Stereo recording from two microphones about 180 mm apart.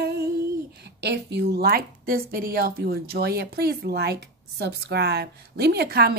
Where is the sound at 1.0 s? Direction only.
65° right (ahead or behind).